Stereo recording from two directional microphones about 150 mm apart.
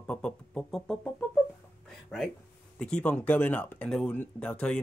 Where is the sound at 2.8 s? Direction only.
10° left (ahead or behind).